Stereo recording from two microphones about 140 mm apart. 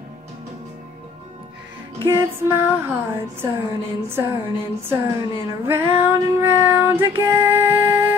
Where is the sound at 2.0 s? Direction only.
20° right (ahead or behind).